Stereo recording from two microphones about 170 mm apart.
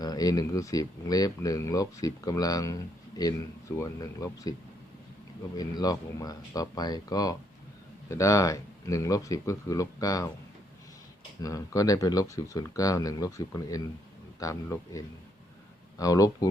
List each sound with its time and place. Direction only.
0.0 s speech: 20° left (ahead or behind)
5.5 s speech: 20° left (ahead or behind)
11.4 s speech: 20° left (ahead or behind)